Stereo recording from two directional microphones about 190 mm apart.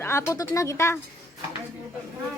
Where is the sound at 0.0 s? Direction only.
15° left (ahead or behind).